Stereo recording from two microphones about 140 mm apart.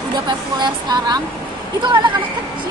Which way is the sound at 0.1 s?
30° right (ahead or behind).